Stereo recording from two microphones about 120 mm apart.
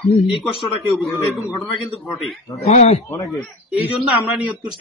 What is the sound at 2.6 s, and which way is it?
Speech, 70° left (ahead or behind).